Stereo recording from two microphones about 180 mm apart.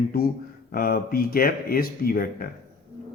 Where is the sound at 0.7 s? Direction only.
55° left (ahead or behind).